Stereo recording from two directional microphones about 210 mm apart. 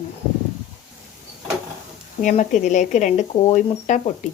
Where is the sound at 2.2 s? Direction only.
35° left (ahead or behind).